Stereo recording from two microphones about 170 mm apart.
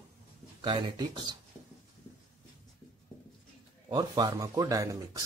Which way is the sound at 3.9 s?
25° right (ahead or behind).